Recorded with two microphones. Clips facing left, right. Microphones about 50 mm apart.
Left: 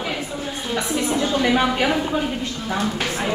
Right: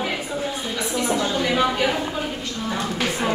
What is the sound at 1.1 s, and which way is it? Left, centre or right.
Speech, left.